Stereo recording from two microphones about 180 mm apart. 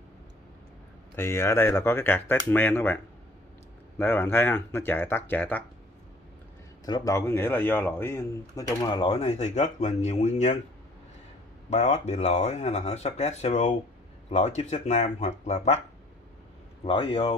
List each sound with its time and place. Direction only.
1.1 s speech: 15° left (ahead or behind)
4.0 s speech: 10° left (ahead or behind)
6.9 s speech: 20° left (ahead or behind); by 10.6 s 40° left (ahead or behind)
11.7 s speech: 40° left (ahead or behind)
16.8 s speech: 30° left (ahead or behind)